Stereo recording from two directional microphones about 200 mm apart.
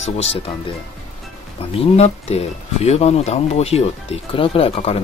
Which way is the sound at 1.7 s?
30° left (ahead or behind).